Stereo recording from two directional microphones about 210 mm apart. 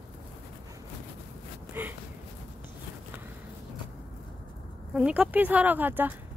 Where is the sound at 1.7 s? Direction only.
10° right (ahead or behind).